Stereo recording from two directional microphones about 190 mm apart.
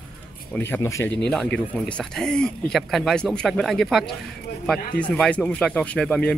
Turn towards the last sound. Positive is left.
turn(degrees=5)  # may be behind; listen again after turning